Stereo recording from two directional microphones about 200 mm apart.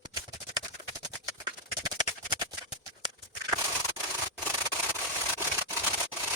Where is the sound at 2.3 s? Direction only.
20° right (ahead or behind).